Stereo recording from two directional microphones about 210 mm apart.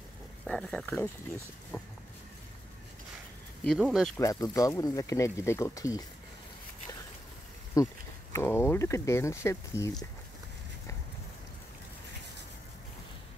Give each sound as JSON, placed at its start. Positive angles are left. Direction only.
{"t": 0.5, "sound": "speech", "side_deg": 0}
{"t": 3.6, "sound": "speech", "side_deg": 0}
{"t": 4.2, "sound": "speech", "side_deg": 15}
{"t": 7.8, "sound": "speech", "side_deg": 15}